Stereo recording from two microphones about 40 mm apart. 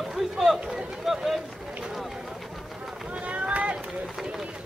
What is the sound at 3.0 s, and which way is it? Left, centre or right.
Run, right.